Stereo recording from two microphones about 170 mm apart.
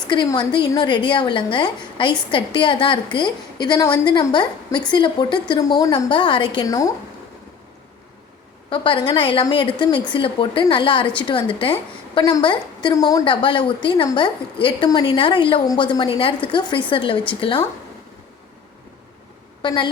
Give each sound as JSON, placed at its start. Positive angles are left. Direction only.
{"t": 0.1, "sound": "a woman's voice", "side_deg": 25}
{"t": 8.7, "sound": "a woman's voice", "side_deg": 30}
{"t": 19.6, "sound": "a woman's voice", "side_deg": 25}